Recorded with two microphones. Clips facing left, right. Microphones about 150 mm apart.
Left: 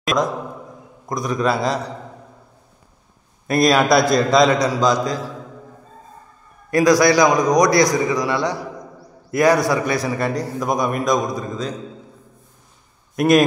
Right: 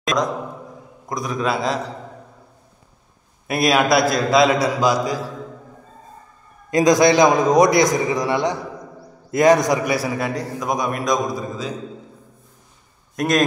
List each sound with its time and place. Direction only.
0.0 s a man's voice: 5° left (ahead or behind)
3.4 s a man's voice: 5° right (ahead or behind)
6.7 s a man's voice: 20° right (ahead or behind)
9.9 s a man's voice: 5° right (ahead or behind)
13.1 s a man's voice: 5° left (ahead or behind)